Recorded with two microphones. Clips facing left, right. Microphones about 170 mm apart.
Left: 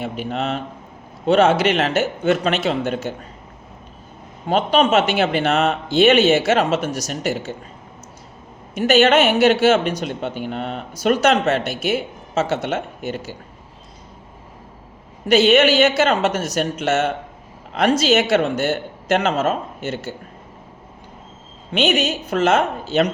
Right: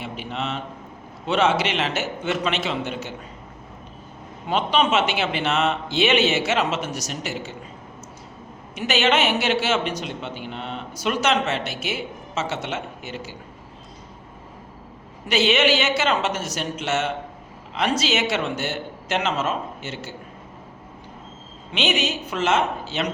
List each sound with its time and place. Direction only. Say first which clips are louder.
0.0 s speech: left 6 dB; 45° left (ahead or behind)
4.4 s speech: left 4 dB; 45° left (ahead or behind)
8.7 s speech: left 7 dB; 50° left (ahead or behind)
15.3 s speech: left 6 dB; 55° left (ahead or behind)
21.7 s speech: left 5 dB; 50° left (ahead or behind)